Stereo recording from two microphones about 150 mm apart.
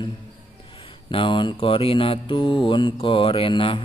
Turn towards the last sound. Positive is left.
turn(degrees=35)  # may be behind; listen again after turning